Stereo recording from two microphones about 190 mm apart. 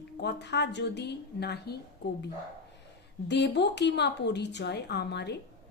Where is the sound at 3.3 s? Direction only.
65° left (ahead or behind).